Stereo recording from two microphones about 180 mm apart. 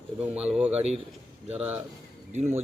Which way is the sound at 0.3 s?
5° right (ahead or behind).